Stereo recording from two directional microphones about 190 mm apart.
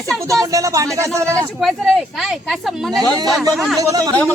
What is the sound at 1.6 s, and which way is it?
Speech, centre (ahead or behind).